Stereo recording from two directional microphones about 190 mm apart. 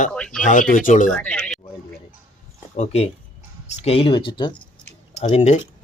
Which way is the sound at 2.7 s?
35° left (ahead or behind).